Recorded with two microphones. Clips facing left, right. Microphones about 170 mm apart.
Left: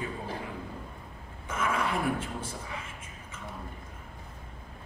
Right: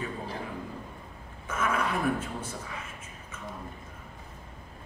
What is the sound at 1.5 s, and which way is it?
A woman's voice, 25° left (ahead or behind).